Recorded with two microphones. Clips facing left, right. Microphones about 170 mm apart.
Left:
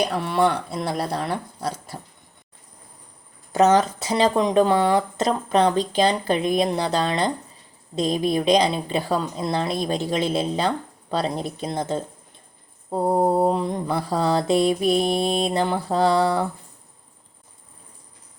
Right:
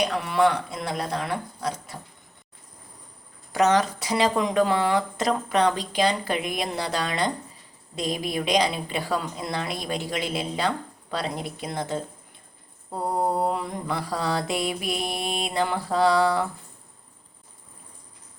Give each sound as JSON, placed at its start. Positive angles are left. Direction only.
{"t": 0.2, "sound": "speech", "side_deg": 30}
{"t": 3.5, "sound": "mantra", "side_deg": 30}